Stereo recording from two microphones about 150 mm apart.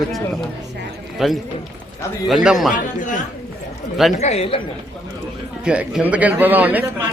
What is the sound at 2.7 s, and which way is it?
Speech, 60° left (ahead or behind).